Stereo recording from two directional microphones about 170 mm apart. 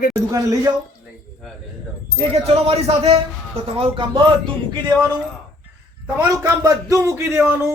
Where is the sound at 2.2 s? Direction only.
35° right (ahead or behind).